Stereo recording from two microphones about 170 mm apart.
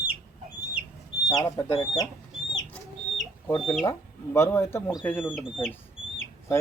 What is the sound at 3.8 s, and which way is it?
Speech, 20° left (ahead or behind).